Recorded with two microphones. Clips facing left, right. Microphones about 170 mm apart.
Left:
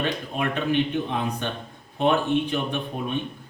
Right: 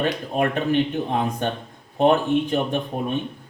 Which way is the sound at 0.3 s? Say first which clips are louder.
Right 3 dB; 45° right (ahead or behind).